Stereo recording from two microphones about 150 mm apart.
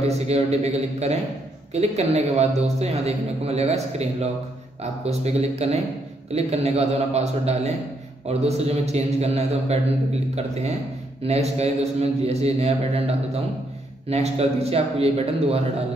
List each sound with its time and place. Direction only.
0.0 s a man's voice: 45° right (ahead or behind)
11.2 s a man's voice: 45° right (ahead or behind)